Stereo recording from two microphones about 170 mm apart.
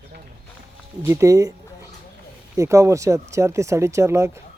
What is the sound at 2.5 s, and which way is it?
Speech, 20° right (ahead or behind).